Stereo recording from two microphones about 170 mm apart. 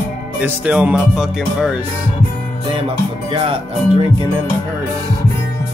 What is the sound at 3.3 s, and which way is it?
Speech, 30° right (ahead or behind).